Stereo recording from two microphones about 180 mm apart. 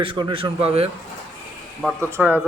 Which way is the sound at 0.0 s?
30° right (ahead or behind).